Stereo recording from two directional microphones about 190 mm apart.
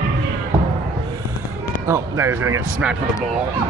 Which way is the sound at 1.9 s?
15° right (ahead or behind).